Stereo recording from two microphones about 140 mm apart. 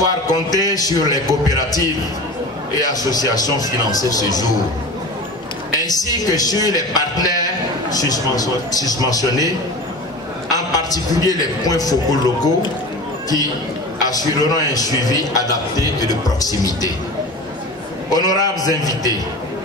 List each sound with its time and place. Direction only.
0.3 s a man's voice: 25° left (ahead or behind)
5.8 s a man's voice: 25° left (ahead or behind)
10.5 s a man's voice: 25° left (ahead or behind)
14.0 s a man's voice: 25° left (ahead or behind)
18.1 s a man's voice: 25° left (ahead or behind)